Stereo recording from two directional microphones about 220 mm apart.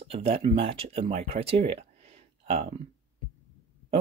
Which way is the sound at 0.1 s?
25° right (ahead or behind).